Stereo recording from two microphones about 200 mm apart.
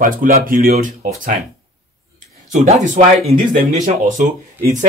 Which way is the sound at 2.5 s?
35° right (ahead or behind).